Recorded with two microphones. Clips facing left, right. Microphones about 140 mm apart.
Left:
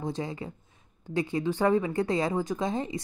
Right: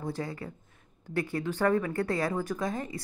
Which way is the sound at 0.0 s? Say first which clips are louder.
Left 2 dB; 20° left (ahead or behind).